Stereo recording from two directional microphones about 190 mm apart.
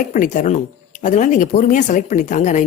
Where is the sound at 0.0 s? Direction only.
45° left (ahead or behind).